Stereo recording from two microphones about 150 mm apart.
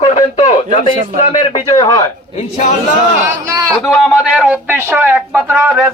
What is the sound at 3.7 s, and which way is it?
A man's voice, centre (ahead or behind).